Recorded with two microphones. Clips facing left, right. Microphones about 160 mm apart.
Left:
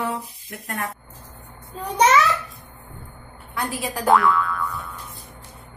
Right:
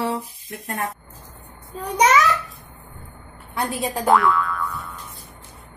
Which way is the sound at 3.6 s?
30° right (ahead or behind).